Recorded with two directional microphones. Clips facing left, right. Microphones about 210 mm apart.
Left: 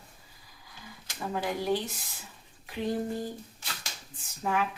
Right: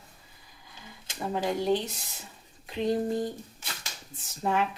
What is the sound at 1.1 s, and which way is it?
Speech, 25° right (ahead or behind).